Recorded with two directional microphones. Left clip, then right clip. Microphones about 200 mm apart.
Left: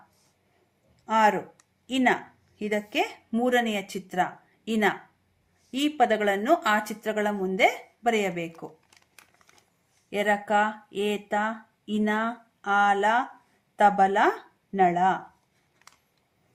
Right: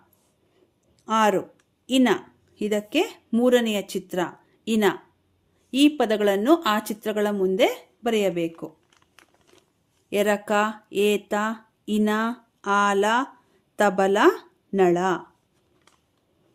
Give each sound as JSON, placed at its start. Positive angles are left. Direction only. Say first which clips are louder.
{"t": 1.0, "sound": "speech", "louder": "right 1 dB", "side_deg": -55}
{"t": 6.0, "sound": "speech", "louder": "right 1 dB", "side_deg": -60}
{"t": 10.1, "sound": "speech", "louder": "right 2 dB", "side_deg": -65}